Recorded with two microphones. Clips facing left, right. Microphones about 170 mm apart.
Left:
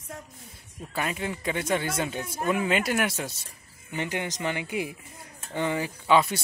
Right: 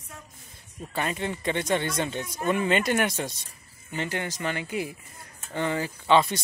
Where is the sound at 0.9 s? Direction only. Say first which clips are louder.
Right 1 dB; 5° left (ahead or behind).